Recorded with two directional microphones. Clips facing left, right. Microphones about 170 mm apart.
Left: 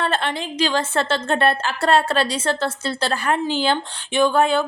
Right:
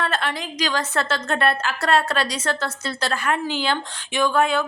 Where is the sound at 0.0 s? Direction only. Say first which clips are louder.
Left 2 dB; 30° left (ahead or behind).